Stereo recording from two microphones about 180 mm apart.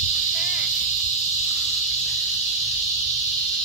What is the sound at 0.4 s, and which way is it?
Cricket, 5° right (ahead or behind).